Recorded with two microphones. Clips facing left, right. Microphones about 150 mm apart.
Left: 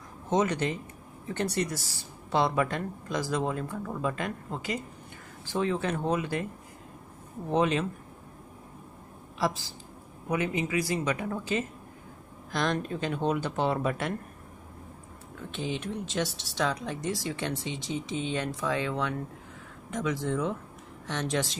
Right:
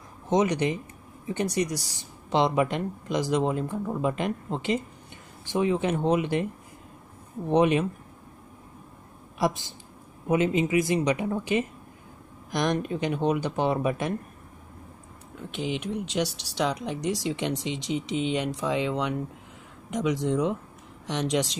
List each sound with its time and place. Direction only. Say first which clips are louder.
0.3 s speech: right 3 dB; 15° right (ahead or behind)
7.4 s speech: right 4 dB; 20° right (ahead or behind)
9.4 s speech: right 3 dB; 20° right (ahead or behind)
15.5 s speech: right 3 dB; 15° right (ahead or behind)